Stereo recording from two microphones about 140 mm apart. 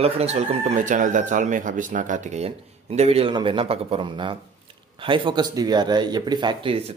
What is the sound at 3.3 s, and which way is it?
Speech, 35° right (ahead or behind).